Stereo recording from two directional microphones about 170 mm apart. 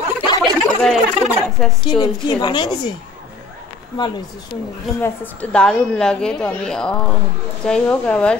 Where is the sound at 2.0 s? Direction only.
25° left (ahead or behind).